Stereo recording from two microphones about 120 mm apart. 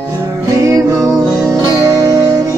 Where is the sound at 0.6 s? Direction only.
25° right (ahead or behind).